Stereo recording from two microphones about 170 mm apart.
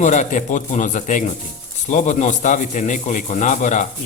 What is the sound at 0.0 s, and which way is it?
A man's voice, 45° left (ahead or behind).